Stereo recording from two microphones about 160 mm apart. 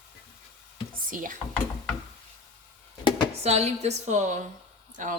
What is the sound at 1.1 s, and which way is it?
Speech, 55° right (ahead or behind).